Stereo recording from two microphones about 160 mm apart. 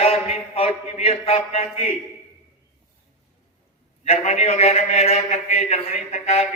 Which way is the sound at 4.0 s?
40° left (ahead or behind).